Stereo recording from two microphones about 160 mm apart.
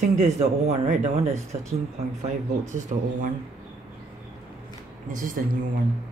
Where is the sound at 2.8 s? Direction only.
50° right (ahead or behind).